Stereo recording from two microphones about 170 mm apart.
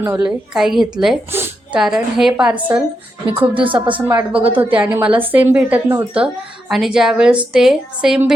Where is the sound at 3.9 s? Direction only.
10° right (ahead or behind).